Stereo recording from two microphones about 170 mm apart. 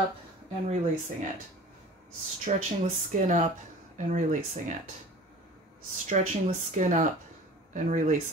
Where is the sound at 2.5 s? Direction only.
40° right (ahead or behind).